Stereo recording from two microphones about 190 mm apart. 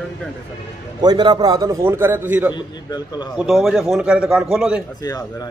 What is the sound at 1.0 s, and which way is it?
Speech, 20° right (ahead or behind).